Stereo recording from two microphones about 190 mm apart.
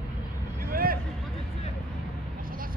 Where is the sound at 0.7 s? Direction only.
50° right (ahead or behind).